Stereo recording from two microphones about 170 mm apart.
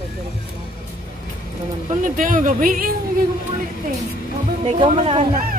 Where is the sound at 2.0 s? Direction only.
50° right (ahead or behind).